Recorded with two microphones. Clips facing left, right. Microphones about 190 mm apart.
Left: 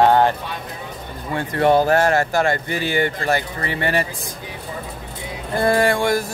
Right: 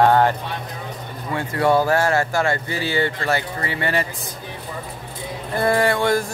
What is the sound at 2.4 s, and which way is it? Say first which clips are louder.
Music: left 2 dB; 15° left (ahead or behind).